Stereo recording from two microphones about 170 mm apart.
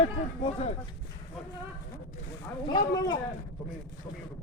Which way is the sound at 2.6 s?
25° left (ahead or behind).